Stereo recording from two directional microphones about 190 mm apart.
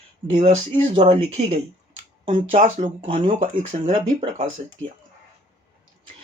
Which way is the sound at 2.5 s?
45° right (ahead or behind).